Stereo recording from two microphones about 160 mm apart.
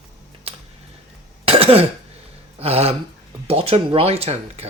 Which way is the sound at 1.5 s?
40° right (ahead or behind).